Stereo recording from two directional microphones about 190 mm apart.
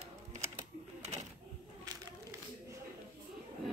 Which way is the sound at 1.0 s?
35° right (ahead or behind).